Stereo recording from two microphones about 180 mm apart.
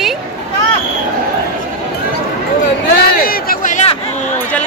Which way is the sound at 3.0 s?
55° left (ahead or behind).